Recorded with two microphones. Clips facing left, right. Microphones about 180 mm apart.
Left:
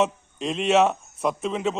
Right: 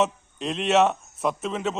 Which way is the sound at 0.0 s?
Centre (ahead or behind).